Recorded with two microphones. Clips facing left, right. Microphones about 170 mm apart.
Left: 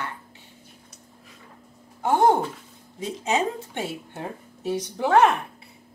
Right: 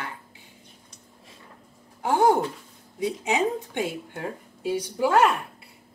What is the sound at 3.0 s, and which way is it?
Speech, 15° right (ahead or behind).